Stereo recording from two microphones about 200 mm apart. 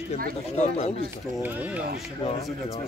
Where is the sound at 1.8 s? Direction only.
50° right (ahead or behind).